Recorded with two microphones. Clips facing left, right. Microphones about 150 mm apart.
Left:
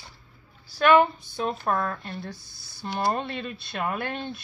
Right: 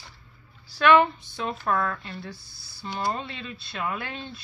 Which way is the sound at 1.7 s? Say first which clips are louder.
Right 3 dB; 30° left (ahead or behind).